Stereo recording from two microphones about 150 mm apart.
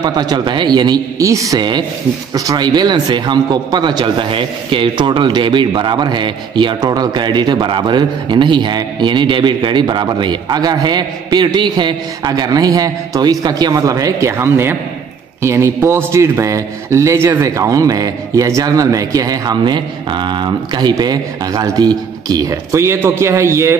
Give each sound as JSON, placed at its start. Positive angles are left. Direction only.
{"t": 0.0, "sound": "a man's voice", "side_deg": -30}